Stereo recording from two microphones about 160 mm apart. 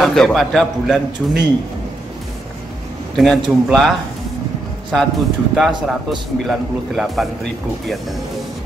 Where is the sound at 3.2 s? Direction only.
Centre (ahead or behind).